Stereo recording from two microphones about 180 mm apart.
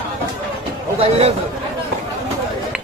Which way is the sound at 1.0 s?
35° right (ahead or behind).